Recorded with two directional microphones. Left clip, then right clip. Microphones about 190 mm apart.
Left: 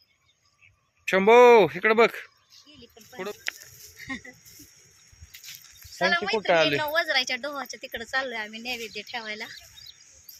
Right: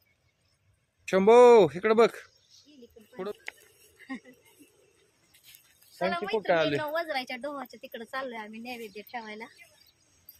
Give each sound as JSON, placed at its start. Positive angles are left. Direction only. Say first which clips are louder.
{"t": 1.0, "sound": "speech", "louder": "left 2 dB", "side_deg": -5}
{"t": 6.0, "sound": "a woman's voice", "louder": "left 6 dB", "side_deg": 0}
{"t": 6.5, "sound": "speech", "louder": "left 4 dB", "side_deg": 35}
{"t": 6.8, "sound": "a woman's voice", "louder": "left 7 dB", "side_deg": 0}